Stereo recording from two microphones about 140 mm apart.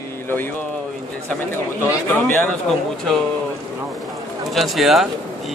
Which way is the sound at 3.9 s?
Centre (ahead or behind).